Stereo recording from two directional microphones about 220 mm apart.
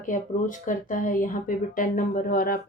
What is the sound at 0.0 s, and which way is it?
Speech, 35° left (ahead or behind).